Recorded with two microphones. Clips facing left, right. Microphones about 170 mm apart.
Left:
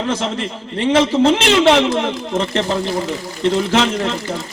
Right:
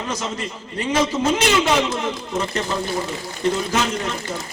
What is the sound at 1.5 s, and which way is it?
Speech, 75° left (ahead or behind).